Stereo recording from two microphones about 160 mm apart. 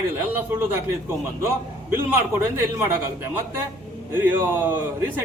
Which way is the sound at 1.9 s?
15° right (ahead or behind).